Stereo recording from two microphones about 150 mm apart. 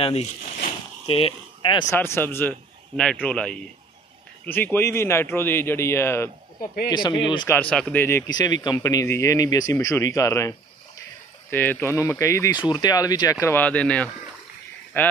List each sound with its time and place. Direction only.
0.0 s speech: 40° left (ahead or behind)
1.9 s a man's voice: 15° left (ahead or behind)
6.9 s speech: 30° left (ahead or behind)
7.4 s a man's voice: 10° left (ahead or behind)
8.3 s speech: 25° left (ahead or behind)
11.5 s a man's voice: 15° left (ahead or behind)